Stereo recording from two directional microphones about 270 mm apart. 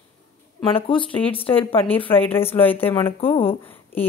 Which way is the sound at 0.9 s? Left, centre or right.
Centre.